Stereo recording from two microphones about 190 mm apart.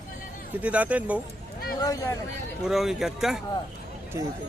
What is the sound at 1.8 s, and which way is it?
Speech, 20° left (ahead or behind).